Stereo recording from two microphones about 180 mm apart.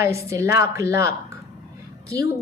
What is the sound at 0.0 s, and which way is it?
A woman's voice, 15° right (ahead or behind).